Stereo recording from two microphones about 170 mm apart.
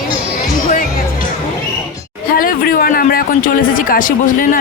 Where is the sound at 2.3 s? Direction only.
60° left (ahead or behind).